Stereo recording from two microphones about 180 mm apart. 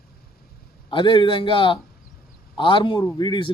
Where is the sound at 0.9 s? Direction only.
25° left (ahead or behind).